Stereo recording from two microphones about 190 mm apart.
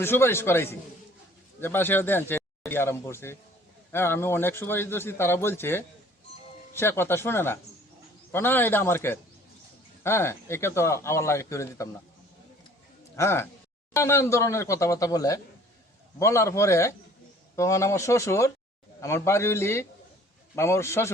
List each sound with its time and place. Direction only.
0.0 s a man's voice: 10° left (ahead or behind)
13.1 s a man's voice: 15° left (ahead or behind)